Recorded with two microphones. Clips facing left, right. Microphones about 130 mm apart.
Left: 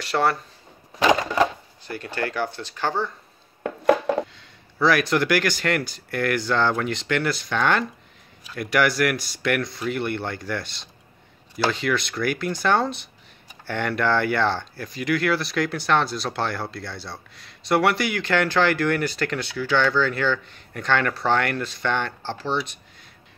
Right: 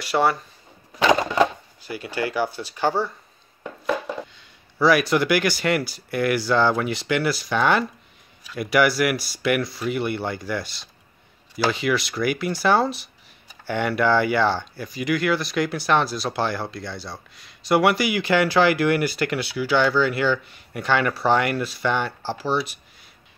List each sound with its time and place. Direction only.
0.0 s speech: 5° right (ahead or behind)
1.8 s speech: 5° right (ahead or behind)
3.6 s a sound: 70° left (ahead or behind)
4.4 s speech: 5° right (ahead or behind)